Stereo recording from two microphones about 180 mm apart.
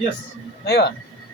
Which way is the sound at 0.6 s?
60° left (ahead or behind).